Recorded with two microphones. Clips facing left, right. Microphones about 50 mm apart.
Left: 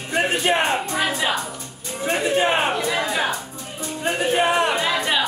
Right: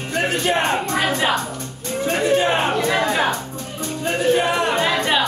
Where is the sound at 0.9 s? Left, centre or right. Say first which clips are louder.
Right 3 dB; right.